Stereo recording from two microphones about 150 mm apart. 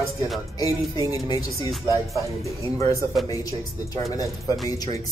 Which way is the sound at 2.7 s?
20° left (ahead or behind).